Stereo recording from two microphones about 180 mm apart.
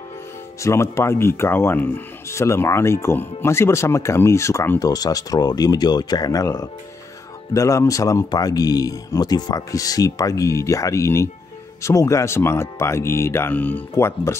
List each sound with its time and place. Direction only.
0.6 s speech: 15° left (ahead or behind)